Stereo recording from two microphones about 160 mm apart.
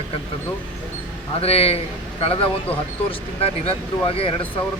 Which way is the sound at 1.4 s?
40° left (ahead or behind).